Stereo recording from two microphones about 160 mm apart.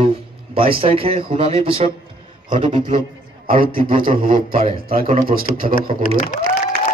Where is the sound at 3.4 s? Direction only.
65° right (ahead or behind).